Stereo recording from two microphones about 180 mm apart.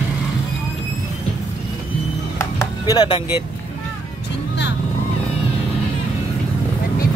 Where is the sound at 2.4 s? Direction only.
20° left (ahead or behind).